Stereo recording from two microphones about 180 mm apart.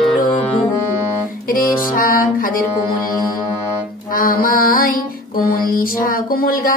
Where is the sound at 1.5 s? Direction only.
50° left (ahead or behind).